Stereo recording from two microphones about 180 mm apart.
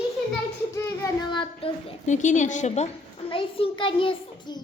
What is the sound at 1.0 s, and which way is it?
Speech, 25° left (ahead or behind).